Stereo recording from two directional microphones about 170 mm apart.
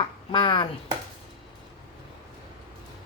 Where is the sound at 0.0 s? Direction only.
30° left (ahead or behind).